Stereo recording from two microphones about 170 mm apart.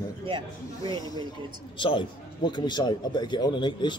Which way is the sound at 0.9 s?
20° left (ahead or behind).